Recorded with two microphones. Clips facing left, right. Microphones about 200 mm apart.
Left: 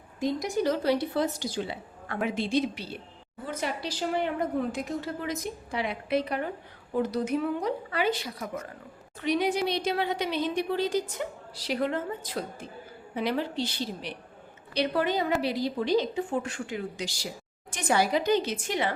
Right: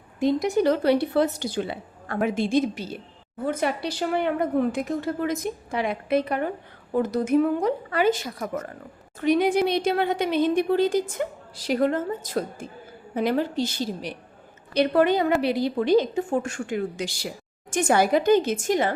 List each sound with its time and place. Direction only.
0.2 s a woman's voice: 65° right (ahead or behind); by 14.2 s 45° right (ahead or behind)
14.7 s a woman's voice: 55° right (ahead or behind)